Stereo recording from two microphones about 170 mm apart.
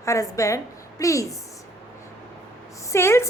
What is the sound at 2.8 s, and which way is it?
Speech, 15° left (ahead or behind).